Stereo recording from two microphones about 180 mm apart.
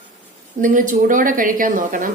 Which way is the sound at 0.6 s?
45° right (ahead or behind).